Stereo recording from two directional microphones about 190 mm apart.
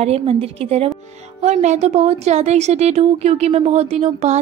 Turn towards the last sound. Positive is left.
turn(degrees=-35)  # may be behind; listen again after turning